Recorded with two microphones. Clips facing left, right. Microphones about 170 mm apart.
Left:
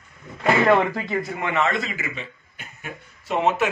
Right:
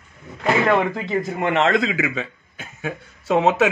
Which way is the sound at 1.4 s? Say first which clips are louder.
Right 7 dB; 75° right (ahead or behind).